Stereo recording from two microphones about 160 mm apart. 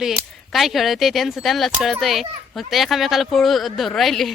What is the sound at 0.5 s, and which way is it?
A child's voice, centre (ahead or behind).